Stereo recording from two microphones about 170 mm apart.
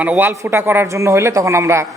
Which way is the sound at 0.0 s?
10° right (ahead or behind).